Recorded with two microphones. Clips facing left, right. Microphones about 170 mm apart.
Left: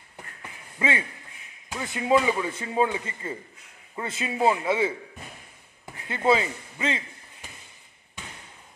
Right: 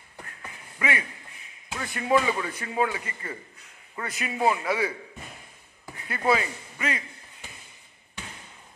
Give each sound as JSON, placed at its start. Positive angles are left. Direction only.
{"t": 0.7, "sound": "a man's voice", "side_deg": 25}
{"t": 6.0, "sound": "speech", "side_deg": 25}